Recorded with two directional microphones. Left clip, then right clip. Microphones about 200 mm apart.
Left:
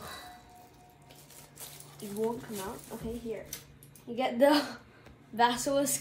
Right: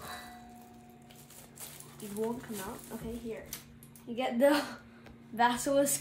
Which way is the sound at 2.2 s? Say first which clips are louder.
Left 3 dB; 5° right (ahead or behind).